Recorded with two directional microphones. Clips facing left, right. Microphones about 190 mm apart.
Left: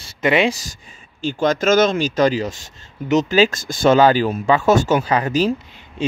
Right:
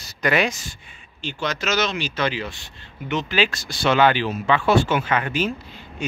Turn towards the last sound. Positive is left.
turn(degrees=35)  # may be behind; listen again after turning